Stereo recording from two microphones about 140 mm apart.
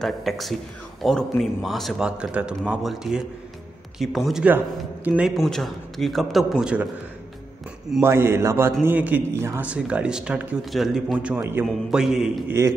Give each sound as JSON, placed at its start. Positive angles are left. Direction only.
{"t": 0.0, "sound": "speech", "side_deg": 0}
{"t": 5.3, "sound": "speech", "side_deg": 0}
{"t": 8.0, "sound": "a man's voice", "side_deg": -20}